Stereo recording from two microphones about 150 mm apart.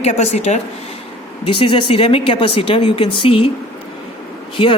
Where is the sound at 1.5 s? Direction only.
35° left (ahead or behind).